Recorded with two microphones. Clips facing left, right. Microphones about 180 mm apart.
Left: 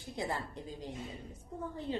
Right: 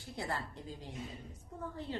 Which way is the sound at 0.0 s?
15° left (ahead or behind).